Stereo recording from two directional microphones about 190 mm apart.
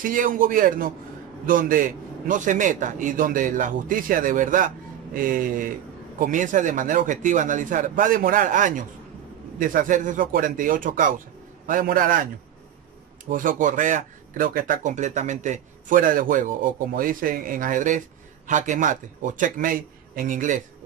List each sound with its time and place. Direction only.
0.0 s speech: 45° right (ahead or behind)